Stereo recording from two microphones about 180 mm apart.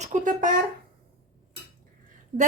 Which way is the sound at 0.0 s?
45° right (ahead or behind).